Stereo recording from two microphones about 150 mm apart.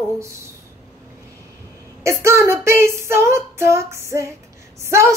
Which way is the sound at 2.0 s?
20° right (ahead or behind).